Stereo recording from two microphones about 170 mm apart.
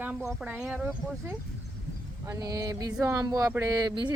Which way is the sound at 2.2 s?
20° right (ahead or behind).